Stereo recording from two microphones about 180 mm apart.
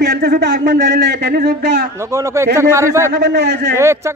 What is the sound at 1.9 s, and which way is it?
A man's voice, 15° right (ahead or behind).